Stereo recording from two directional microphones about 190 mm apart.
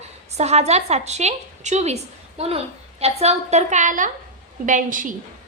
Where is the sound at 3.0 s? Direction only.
35° right (ahead or behind).